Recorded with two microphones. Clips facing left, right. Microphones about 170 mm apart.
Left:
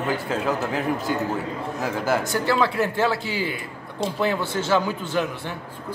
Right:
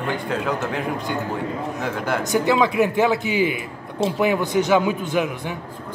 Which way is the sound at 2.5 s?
15° right (ahead or behind).